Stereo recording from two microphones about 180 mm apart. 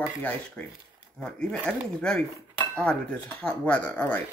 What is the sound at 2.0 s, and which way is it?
Cutlery, 5° left (ahead or behind).